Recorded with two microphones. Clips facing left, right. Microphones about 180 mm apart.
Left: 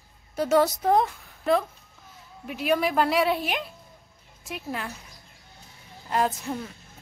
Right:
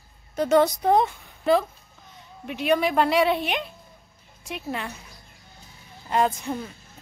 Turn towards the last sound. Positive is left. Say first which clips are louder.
# right 2 dB
turn(degrees=0)  # may be behind; listen again after turning